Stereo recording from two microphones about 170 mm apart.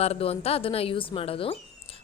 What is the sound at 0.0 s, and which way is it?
A woman's voice, 35° left (ahead or behind).